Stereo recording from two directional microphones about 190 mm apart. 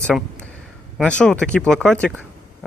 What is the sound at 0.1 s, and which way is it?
Speech, centre (ahead or behind).